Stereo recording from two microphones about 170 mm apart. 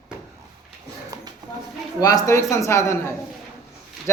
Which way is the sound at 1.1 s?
20° right (ahead or behind).